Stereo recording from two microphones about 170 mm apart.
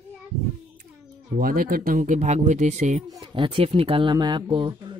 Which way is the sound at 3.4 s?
30° right (ahead or behind).